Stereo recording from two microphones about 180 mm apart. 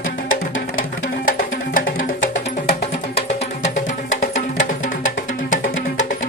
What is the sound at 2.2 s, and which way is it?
Music, 85° left.